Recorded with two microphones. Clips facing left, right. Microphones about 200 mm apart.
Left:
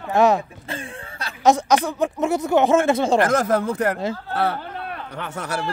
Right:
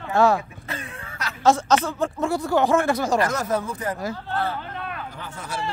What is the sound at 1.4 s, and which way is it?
Speech, 15° left (ahead or behind).